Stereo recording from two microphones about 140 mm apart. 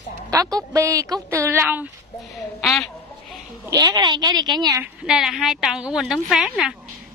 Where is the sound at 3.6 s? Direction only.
25° right (ahead or behind).